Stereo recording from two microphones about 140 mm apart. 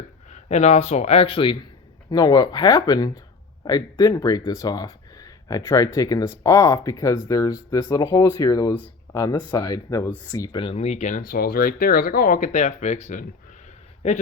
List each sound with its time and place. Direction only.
0.3 s a man's voice: 55° left (ahead or behind); by 1.5 s 40° left (ahead or behind)
2.0 s speech: 30° left (ahead or behind)
10.6 s a man's voice: 45° left (ahead or behind)
11.3 s speech: 90° left; by 13.2 s 60° left (ahead or behind)